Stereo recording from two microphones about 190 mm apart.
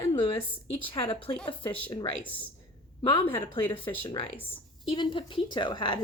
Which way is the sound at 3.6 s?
25° left (ahead or behind).